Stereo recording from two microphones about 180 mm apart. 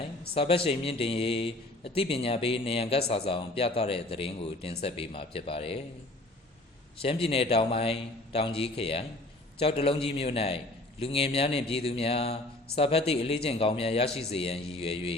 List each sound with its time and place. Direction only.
0.3 s a man's voice: 30° left (ahead or behind)
7.0 s a man's voice: 30° left (ahead or behind)